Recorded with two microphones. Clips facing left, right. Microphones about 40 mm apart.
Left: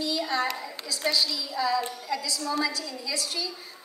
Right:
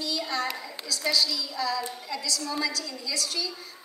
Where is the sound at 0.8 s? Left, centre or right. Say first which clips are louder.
Even; centre.